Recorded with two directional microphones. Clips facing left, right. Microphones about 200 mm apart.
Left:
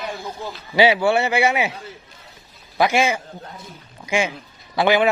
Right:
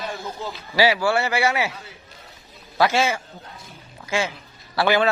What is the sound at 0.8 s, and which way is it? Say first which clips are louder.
A man's voice: left 3 dB; 20° left (ahead or behind).